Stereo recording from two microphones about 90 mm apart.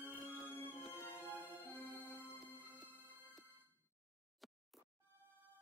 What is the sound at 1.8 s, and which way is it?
Music, 20° left (ahead or behind).